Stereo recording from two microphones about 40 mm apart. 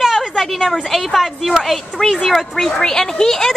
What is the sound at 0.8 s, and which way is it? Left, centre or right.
A woman's voice, centre.